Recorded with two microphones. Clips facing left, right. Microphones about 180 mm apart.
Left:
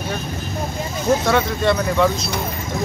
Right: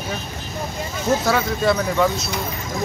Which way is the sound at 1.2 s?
Centre (ahead or behind).